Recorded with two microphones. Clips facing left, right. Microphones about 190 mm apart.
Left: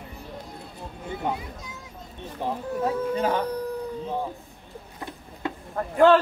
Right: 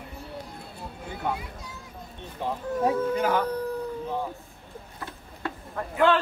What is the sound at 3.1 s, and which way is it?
Speech, 30° left (ahead or behind).